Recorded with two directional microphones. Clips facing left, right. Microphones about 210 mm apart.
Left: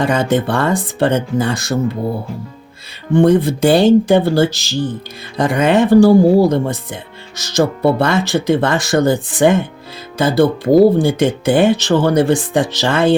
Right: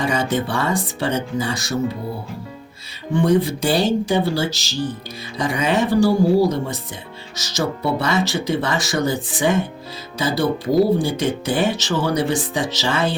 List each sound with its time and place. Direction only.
0.0 s speech: 55° left (ahead or behind)
3.1 s speech: 55° left (ahead or behind)